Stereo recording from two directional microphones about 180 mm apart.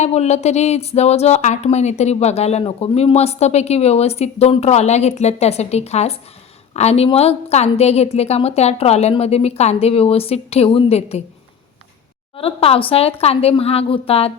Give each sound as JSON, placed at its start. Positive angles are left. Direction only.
{"t": 0.0, "sound": "speech", "side_deg": 35}
{"t": 12.4, "sound": "speech", "side_deg": 30}